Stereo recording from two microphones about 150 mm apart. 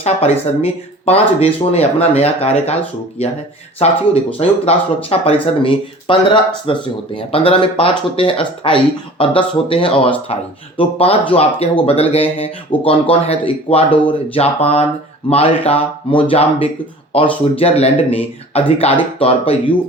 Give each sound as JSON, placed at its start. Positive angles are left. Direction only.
{"t": 0.0, "sound": "speech", "side_deg": 45}
{"t": 3.8, "sound": "speech", "side_deg": 45}